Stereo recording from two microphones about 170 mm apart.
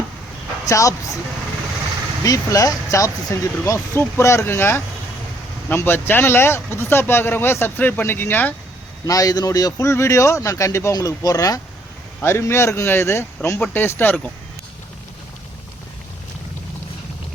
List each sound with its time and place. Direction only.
0.6 s speech: 20° left (ahead or behind)
2.2 s a man's voice: 20° left (ahead or behind)